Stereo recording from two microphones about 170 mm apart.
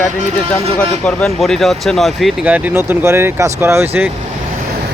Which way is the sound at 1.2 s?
5° left (ahead or behind).